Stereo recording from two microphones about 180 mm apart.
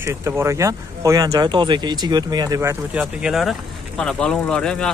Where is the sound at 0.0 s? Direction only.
15° right (ahead or behind).